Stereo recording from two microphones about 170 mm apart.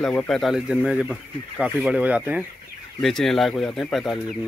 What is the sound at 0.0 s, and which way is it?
Speech, 5° left (ahead or behind).